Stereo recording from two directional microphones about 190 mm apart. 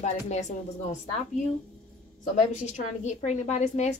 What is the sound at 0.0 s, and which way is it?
Speech, 40° left (ahead or behind).